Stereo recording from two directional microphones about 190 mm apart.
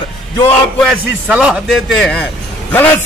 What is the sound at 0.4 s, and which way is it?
Speech, 10° left (ahead or behind).